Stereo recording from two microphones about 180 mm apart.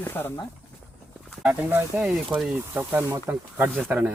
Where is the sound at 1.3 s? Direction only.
5° right (ahead or behind).